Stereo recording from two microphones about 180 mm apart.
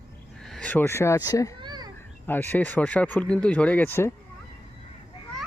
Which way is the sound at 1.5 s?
25° right (ahead or behind).